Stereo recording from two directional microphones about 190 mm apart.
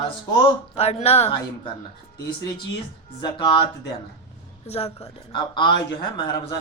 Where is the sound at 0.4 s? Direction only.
35° left (ahead or behind).